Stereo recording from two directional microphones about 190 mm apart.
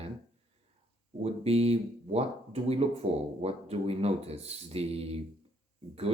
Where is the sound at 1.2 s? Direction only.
30° right (ahead or behind).